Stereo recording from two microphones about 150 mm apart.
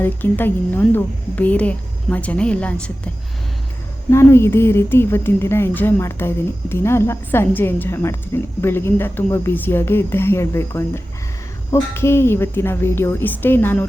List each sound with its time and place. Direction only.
0.0 s speech: 15° left (ahead or behind)
4.1 s speech: 20° left (ahead or behind)